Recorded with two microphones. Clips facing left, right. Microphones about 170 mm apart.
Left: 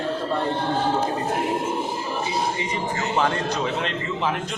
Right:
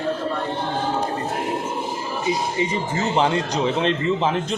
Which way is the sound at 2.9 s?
25° right (ahead or behind).